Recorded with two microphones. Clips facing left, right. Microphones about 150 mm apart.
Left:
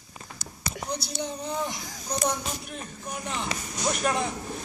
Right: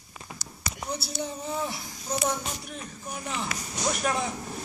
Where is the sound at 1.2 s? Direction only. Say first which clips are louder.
Left 1 dB; 5° right (ahead or behind).